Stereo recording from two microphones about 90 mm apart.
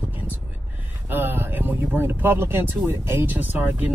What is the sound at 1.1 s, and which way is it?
Speech, 25° right (ahead or behind).